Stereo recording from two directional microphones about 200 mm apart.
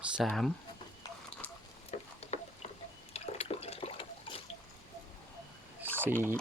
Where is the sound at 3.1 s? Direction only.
30° left (ahead or behind).